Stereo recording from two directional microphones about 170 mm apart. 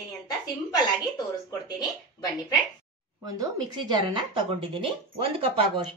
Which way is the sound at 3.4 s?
25° right (ahead or behind).